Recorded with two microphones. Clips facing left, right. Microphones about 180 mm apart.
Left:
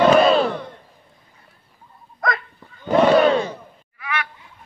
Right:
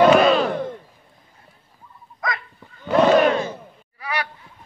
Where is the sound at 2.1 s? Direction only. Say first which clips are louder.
Left 4 dB; 50° left (ahead or behind).